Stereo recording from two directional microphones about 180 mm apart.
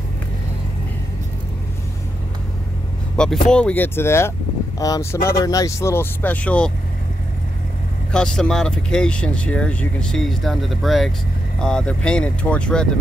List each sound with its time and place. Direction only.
3.4 s speech: 5° left (ahead or behind)
8.1 s speech: 5° left (ahead or behind)